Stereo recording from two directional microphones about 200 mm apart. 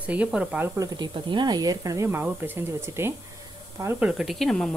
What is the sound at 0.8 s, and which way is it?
Speech, 20° right (ahead or behind).